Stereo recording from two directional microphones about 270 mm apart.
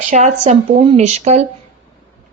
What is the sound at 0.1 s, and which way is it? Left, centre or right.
A woman's voice, right.